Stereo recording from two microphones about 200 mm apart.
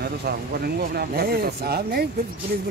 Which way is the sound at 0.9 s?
50° right (ahead or behind).